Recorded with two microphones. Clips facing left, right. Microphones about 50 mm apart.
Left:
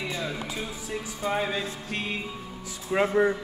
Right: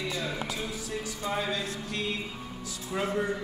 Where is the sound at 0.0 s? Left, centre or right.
Left.